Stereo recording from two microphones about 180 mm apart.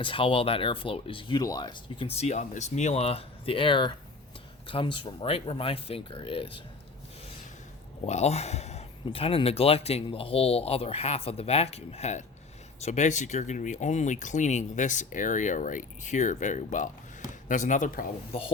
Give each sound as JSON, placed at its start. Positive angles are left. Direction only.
{"t": 0.0, "sound": "speech", "side_deg": 30}
{"t": 8.0, "sound": "speech", "side_deg": 35}
{"t": 18.3, "sound": "speech", "side_deg": 30}